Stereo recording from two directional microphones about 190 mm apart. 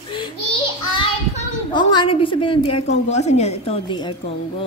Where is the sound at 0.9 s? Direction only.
25° left (ahead or behind).